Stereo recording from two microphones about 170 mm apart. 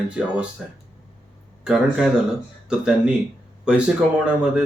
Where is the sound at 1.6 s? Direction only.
5° right (ahead or behind).